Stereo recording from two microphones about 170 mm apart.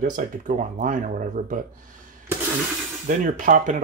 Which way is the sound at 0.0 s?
50° right (ahead or behind).